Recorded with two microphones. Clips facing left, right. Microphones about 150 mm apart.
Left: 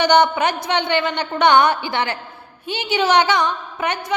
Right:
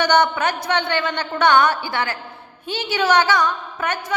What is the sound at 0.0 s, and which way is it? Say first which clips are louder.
A woman's voice: left 2 dB; 15° left (ahead or behind).